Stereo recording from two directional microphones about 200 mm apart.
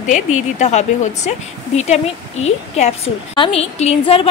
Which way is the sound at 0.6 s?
35° left (ahead or behind).